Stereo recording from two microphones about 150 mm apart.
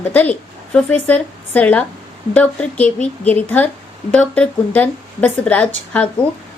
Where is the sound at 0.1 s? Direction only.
10° left (ahead or behind).